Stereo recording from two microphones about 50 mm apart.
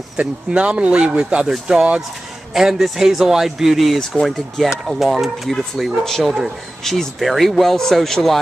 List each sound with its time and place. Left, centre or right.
0.2 s speech: right
2.5 s speech: centre